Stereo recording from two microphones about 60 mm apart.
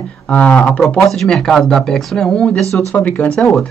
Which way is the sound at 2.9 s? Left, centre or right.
Left.